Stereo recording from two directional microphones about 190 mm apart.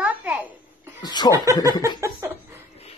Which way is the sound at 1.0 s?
20° left (ahead or behind).